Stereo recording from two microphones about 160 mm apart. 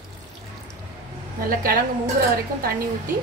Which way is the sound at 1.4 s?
65° right (ahead or behind).